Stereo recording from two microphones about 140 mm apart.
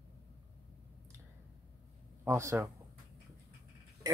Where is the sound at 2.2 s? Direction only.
20° right (ahead or behind).